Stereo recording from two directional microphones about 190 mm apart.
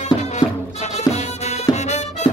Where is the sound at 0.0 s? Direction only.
35° left (ahead or behind).